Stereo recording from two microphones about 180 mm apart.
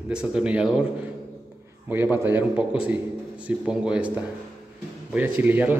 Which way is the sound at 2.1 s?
10° right (ahead or behind).